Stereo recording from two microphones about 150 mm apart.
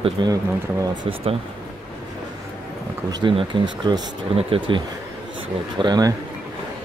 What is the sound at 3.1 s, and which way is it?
Speech, 30° right (ahead or behind).